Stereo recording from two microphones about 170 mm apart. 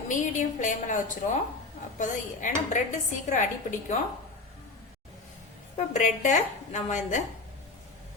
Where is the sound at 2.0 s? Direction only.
45° left (ahead or behind).